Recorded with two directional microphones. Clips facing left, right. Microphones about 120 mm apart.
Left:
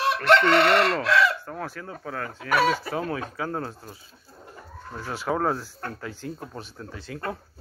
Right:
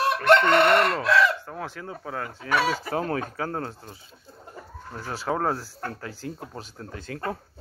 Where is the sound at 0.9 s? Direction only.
15° right (ahead or behind).